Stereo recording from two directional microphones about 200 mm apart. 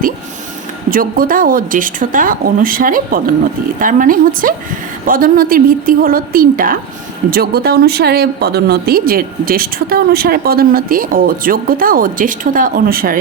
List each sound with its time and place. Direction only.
0.9 s speech: 45° right (ahead or behind)